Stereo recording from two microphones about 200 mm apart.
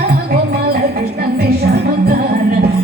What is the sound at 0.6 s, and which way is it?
Music, 50° right (ahead or behind).